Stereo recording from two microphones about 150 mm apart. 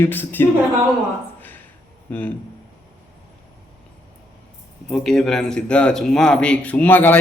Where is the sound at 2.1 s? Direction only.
10° left (ahead or behind).